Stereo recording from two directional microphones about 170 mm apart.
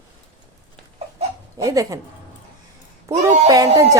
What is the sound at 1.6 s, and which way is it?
Speech, 20° right (ahead or behind).